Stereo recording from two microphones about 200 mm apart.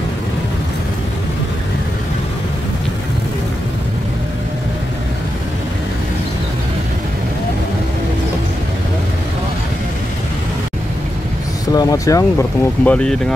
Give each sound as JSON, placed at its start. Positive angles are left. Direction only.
{"t": 11.7, "sound": "speech", "side_deg": 20}